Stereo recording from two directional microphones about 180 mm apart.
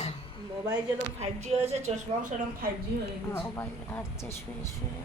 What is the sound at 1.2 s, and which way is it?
Speech, 35° right (ahead or behind).